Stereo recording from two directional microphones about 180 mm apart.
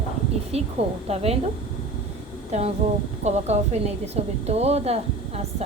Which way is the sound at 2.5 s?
35° right (ahead or behind).